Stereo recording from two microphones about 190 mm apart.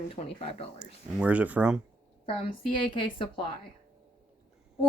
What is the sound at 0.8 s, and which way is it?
Speech, 5° right (ahead or behind).